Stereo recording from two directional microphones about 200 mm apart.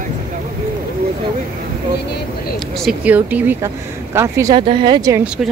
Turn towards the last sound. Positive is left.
turn(degrees=-15)  # may be behind; listen again after turning